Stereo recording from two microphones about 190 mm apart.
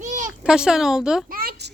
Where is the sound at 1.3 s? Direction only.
50° right (ahead or behind).